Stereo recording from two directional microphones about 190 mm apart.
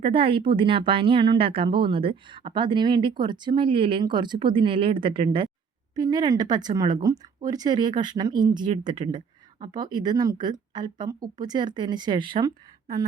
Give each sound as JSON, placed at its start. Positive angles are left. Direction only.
{"t": 0.0, "sound": "speech", "side_deg": -30}